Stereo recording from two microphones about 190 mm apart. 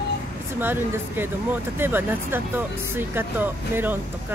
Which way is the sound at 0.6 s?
10° right (ahead or behind).